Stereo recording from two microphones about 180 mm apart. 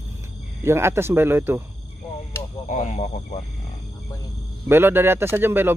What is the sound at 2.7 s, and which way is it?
Speech, 45° left (ahead or behind).